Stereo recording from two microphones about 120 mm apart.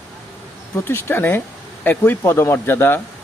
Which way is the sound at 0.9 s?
20° left (ahead or behind).